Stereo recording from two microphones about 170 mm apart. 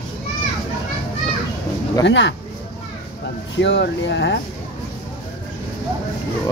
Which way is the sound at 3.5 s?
90° left.